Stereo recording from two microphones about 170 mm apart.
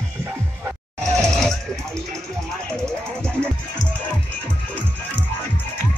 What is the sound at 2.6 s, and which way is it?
Music, 5° left (ahead or behind).